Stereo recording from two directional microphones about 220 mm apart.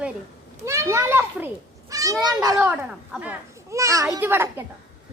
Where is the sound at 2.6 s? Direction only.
5° right (ahead or behind).